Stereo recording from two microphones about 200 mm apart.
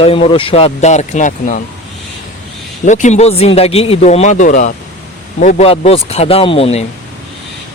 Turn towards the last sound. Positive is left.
turn(degrees=30)  # may be behind; listen again after turning